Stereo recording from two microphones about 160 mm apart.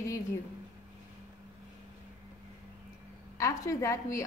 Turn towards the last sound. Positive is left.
turn(degrees=20)  # may be behind; listen again after turning